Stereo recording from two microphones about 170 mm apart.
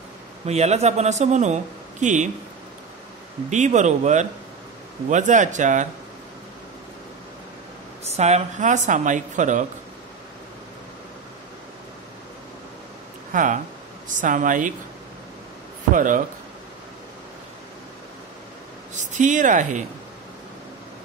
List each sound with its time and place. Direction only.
0.5 s speech: 40° right (ahead or behind)
3.4 s speech: 45° right (ahead or behind)
8.0 s speech: 40° right (ahead or behind)
13.3 s speech: 50° right (ahead or behind)
15.9 s speech: 50° right (ahead or behind)
18.9 s speech: 45° right (ahead or behind)